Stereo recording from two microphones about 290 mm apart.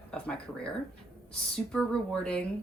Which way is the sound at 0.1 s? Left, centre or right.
Centre.